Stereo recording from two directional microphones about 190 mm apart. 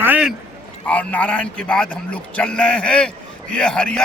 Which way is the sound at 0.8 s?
10° left (ahead or behind).